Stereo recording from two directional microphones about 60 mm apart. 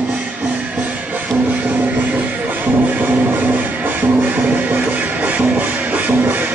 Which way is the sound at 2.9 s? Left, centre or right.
Right.